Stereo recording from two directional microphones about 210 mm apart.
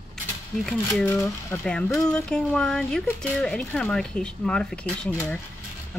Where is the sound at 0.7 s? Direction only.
5° left (ahead or behind).